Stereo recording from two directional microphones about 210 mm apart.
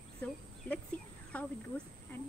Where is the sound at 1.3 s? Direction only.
5° left (ahead or behind).